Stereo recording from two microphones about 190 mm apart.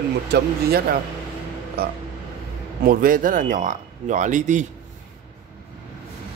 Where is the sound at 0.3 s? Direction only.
55° right (ahead or behind).